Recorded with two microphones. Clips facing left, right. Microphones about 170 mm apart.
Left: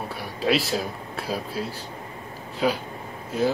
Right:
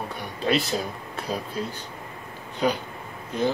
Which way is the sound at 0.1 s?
5° left (ahead or behind).